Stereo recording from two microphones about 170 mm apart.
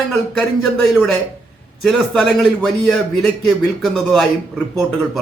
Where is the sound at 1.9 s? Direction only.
Centre (ahead or behind).